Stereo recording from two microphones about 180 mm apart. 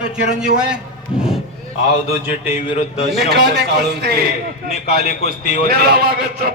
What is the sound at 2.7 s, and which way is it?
Speech, 35° left (ahead or behind).